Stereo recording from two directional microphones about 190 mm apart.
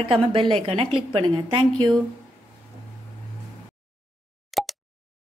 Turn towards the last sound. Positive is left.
turn(degrees=0)  # may be behind; listen again after turning